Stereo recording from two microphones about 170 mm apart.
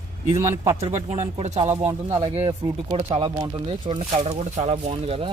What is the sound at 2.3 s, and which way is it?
Speech, 35° right (ahead or behind).